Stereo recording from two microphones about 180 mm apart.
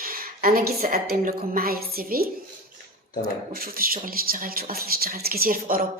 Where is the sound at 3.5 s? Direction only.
55° right (ahead or behind).